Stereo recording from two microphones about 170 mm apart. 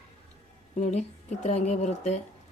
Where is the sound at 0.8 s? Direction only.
45° left (ahead or behind).